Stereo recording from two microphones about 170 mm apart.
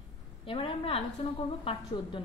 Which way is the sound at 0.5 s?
30° left (ahead or behind).